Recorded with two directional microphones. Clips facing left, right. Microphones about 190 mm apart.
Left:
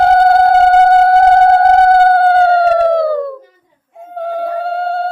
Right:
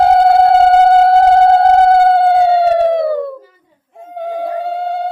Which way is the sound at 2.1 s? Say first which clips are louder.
Left 1 dB; 25° right (ahead or behind).